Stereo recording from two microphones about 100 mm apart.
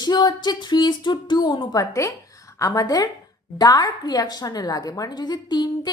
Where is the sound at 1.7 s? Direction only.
30° left (ahead or behind).